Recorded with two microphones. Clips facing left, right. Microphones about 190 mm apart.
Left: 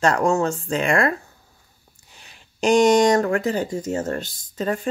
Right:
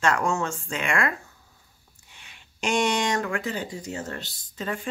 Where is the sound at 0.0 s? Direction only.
35° left (ahead or behind).